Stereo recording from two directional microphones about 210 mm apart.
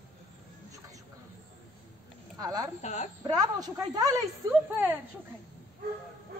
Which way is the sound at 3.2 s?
15° right (ahead or behind).